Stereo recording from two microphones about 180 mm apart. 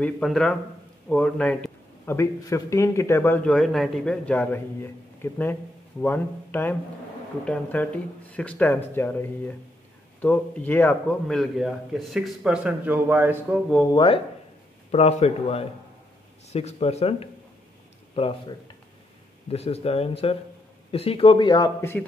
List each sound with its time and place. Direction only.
0.0 s a man's voice: 5° left (ahead or behind)
13.9 s speech: 30° left (ahead or behind)